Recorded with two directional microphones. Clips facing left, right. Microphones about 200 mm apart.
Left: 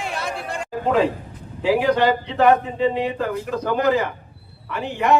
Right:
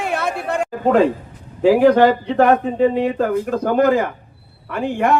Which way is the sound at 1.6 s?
50° right (ahead or behind).